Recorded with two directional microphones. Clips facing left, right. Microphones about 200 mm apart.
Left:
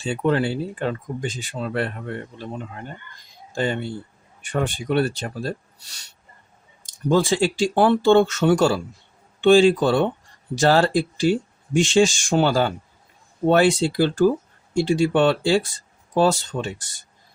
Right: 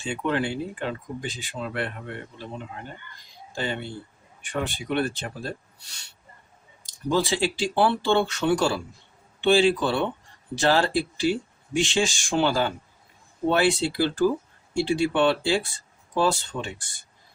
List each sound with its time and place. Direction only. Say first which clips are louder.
0.0 s speech: left 5 dB; 35° left (ahead or behind)
3.5 s speech: left 6 dB; 50° left (ahead or behind)
6.8 s speech: left 5 dB; 50° left (ahead or behind)